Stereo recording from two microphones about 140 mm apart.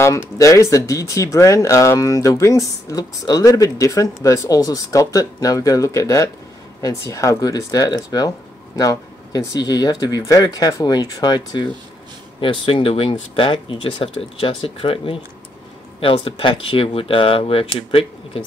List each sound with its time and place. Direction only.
0.0 s speech: 20° left (ahead or behind); by 18.4 s 40° left (ahead or behind)